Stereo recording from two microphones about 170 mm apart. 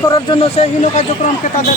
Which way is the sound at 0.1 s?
35° left (ahead or behind).